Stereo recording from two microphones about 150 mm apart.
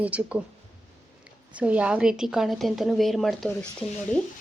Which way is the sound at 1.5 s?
10° right (ahead or behind).